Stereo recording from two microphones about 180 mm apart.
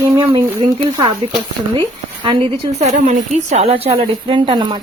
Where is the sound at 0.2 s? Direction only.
25° right (ahead or behind).